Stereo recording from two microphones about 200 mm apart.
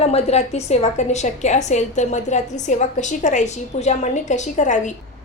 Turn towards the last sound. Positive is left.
turn(degrees=40)  # may be behind; listen again after turning